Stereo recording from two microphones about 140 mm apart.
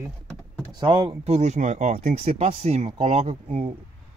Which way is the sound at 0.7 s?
35° right (ahead or behind).